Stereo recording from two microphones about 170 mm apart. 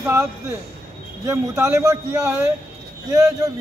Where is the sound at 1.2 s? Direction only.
15° right (ahead or behind).